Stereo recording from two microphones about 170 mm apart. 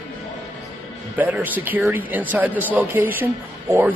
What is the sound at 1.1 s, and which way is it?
Speech, 10° right (ahead or behind).